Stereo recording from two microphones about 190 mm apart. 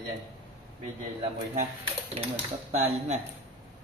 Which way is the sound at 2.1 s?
30° right (ahead or behind).